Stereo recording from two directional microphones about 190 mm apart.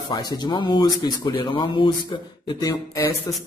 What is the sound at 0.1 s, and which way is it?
Speech, 20° left (ahead or behind).